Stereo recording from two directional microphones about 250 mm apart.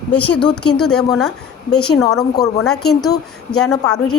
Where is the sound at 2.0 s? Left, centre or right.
Centre.